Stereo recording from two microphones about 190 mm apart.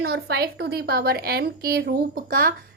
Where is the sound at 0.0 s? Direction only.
60° right (ahead or behind).